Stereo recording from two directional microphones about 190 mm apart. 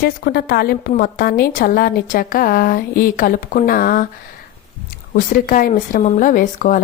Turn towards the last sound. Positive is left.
turn(degrees=40)  # may be behind; listen again after turning